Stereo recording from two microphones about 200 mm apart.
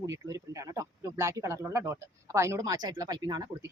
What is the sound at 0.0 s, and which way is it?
Speech, 15° right (ahead or behind).